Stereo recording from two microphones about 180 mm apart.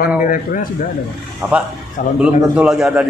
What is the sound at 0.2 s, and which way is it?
Speech, 50° left (ahead or behind).